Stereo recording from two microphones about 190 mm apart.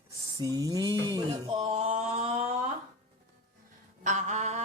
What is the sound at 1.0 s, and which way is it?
Music, 25° right (ahead or behind).